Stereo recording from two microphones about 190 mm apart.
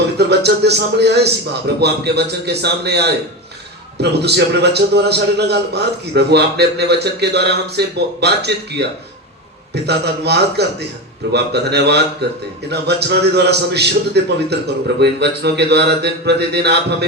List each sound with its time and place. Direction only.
0.2 s a man's voice: 60° right (ahead or behind)